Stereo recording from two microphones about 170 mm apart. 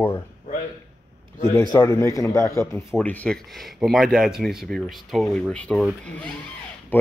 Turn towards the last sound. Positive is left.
turn(degrees=5)  # may be behind; listen again after turning